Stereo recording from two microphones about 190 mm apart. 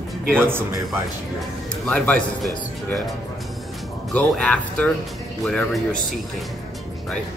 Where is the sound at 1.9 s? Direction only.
5° left (ahead or behind).